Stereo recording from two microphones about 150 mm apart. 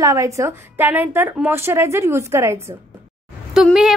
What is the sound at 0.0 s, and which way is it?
A woman's voice, 20° right (ahead or behind).